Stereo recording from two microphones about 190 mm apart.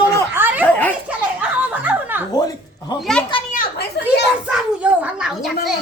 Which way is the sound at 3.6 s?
60° left (ahead or behind).